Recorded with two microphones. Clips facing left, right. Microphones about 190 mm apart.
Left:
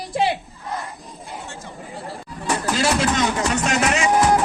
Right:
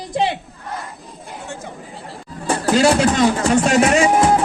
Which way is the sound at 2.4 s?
35° right (ahead or behind).